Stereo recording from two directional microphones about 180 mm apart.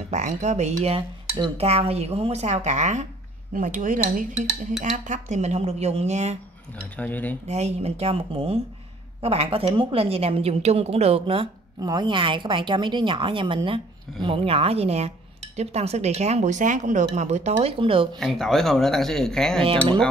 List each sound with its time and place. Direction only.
0.1 s speech: 40° right (ahead or behind)
4.3 s speech: 5° right (ahead or behind)
4.9 s speech: 45° right (ahead or behind)
7.0 s cutlery: 10° left (ahead or behind)
7.4 s a woman's voice: 40° right (ahead or behind)
18.2 s speech: centre (ahead or behind)
19.6 s a woman's voice: 30° right (ahead or behind)